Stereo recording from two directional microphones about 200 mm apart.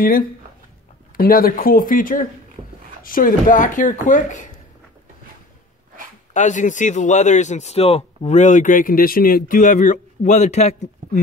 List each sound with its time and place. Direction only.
1.1 s speech: 45° left (ahead or behind)
6.3 s speech: 40° left (ahead or behind)